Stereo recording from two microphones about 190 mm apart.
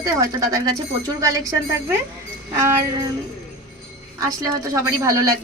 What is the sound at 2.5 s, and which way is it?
Speech, 15° right (ahead or behind).